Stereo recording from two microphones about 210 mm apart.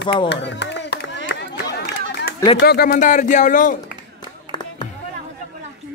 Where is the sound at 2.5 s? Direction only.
50° left (ahead or behind).